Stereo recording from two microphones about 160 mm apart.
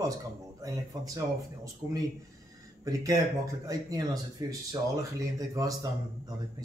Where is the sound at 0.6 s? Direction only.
20° right (ahead or behind).